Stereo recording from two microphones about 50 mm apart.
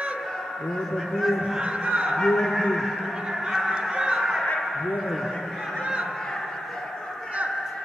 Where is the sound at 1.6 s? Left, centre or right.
Centre.